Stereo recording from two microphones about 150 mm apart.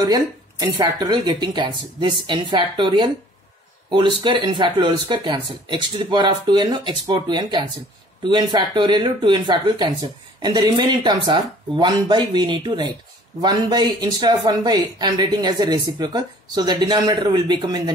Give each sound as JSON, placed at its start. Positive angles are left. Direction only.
{"t": 0.0, "sound": "speech", "side_deg": -25}